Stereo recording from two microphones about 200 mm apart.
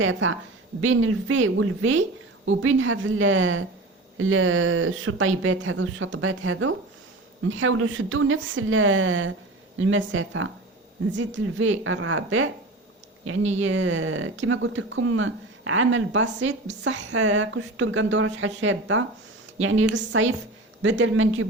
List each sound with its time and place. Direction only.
0.0 s a woman's voice: 80° right
11.2 s a woman's voice: 70° right (ahead or behind); by 13.5 s 90° right
13.6 s a woman's voice: 75° right (ahead or behind)